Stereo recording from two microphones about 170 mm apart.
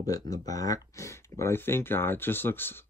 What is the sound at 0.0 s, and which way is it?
Speech, 20° left (ahead or behind).